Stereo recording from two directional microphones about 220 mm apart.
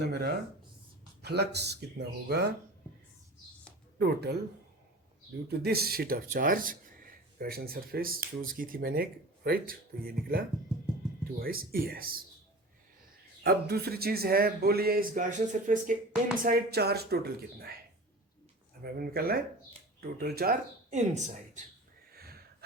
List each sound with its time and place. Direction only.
0.0 s a man's voice: 45° right (ahead or behind)
3.9 s speech: 50° right (ahead or behind)
5.5 s a man's voice: 45° right (ahead or behind)
13.4 s a man's voice: 45° right (ahead or behind)
18.8 s a man's voice: 45° right (ahead or behind)
22.1 s a sound: 45° right (ahead or behind)